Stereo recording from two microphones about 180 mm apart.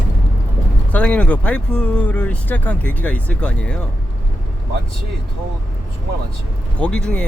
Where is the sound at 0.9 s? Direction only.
5° left (ahead or behind).